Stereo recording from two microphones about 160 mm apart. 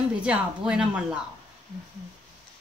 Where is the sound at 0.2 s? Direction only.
5° right (ahead or behind).